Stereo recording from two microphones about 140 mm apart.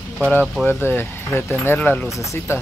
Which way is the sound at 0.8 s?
15° left (ahead or behind).